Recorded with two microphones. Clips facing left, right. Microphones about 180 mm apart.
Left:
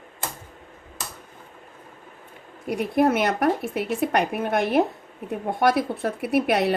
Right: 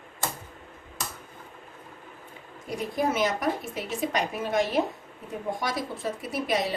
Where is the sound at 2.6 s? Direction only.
65° left (ahead or behind).